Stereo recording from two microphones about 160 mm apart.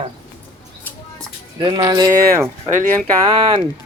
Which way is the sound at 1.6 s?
25° right (ahead or behind).